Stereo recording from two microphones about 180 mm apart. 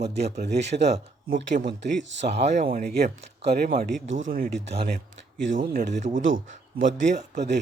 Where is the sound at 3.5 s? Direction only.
55° right (ahead or behind).